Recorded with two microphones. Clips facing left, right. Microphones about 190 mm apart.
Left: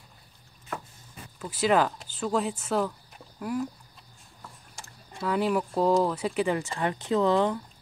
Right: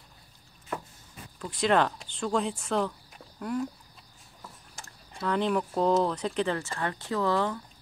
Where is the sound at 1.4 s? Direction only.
5° left (ahead or behind).